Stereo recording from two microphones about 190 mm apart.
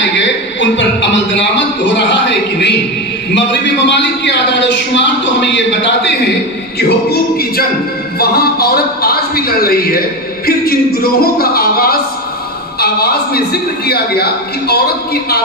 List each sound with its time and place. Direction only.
0.0 s a sound: 75° left (ahead or behind)
2.0 s a man's voice: 65° left (ahead or behind)
6.8 s music: 55° left (ahead or behind)
8.2 s a man's voice: 55° left (ahead or behind)